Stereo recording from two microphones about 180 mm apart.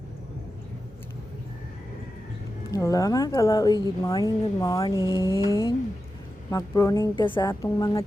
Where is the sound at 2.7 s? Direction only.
20° left (ahead or behind).